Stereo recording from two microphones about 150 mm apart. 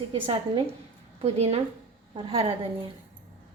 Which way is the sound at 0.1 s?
40° right (ahead or behind).